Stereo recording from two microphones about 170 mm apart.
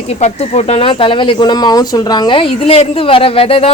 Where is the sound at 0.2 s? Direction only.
40° left (ahead or behind).